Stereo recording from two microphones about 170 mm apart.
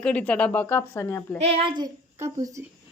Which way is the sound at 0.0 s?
5° left (ahead or behind).